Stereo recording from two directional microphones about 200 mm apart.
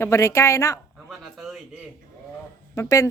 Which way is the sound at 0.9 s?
Centre (ahead or behind).